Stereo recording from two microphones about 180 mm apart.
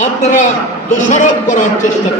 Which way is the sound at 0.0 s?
45° left (ahead or behind).